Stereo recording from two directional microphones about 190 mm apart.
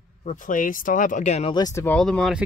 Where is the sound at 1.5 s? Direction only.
15° left (ahead or behind).